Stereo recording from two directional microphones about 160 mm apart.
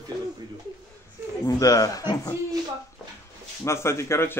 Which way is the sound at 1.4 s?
20° left (ahead or behind).